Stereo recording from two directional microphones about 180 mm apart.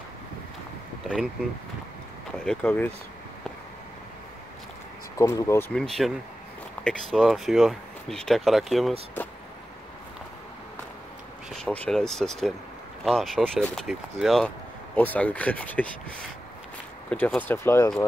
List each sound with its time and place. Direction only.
1.1 s speech: centre (ahead or behind)
5.1 s speech: 20° left (ahead or behind)
5.7 s speech: 5° left (ahead or behind)
11.5 s speech: 5° left (ahead or behind)
17.1 s speech: 5° left (ahead or behind)